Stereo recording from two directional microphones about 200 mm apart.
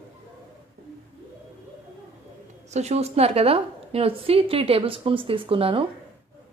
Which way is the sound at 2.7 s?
35° right (ahead or behind).